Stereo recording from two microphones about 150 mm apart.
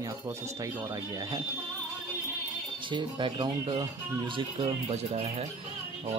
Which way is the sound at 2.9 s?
35° right (ahead or behind).